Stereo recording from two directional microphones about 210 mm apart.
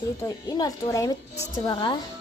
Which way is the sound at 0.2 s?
20° left (ahead or behind).